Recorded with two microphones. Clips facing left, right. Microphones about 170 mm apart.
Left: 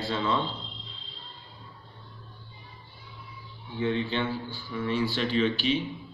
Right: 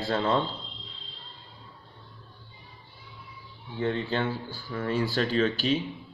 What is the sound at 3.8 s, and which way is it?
A man's voice, 40° right (ahead or behind).